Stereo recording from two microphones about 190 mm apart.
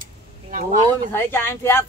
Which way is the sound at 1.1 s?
10° left (ahead or behind).